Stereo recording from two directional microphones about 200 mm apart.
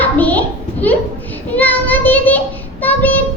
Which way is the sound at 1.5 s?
10° left (ahead or behind).